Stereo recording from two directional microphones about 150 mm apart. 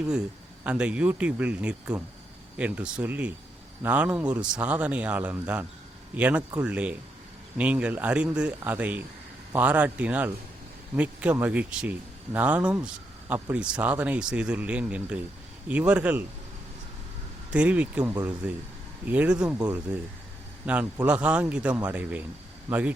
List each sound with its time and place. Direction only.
0.0 s speech: 5° right (ahead or behind)
17.5 s speech: 10° right (ahead or behind)